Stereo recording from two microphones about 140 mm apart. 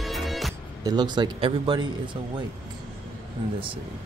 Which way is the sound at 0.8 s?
30° right (ahead or behind).